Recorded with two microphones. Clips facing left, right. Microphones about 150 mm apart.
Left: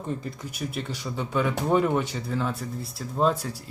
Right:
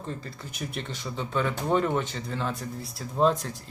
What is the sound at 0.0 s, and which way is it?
Speech, 15° left (ahead or behind).